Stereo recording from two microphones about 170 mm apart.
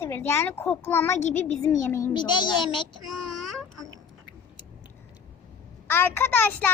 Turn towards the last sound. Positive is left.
turn(degrees=10)  # may be behind; listen again after turning